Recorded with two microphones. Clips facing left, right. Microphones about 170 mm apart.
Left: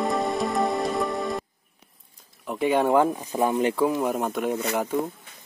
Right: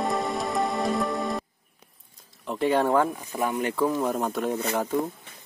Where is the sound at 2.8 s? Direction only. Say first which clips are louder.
Left 2 dB; 20° left (ahead or behind).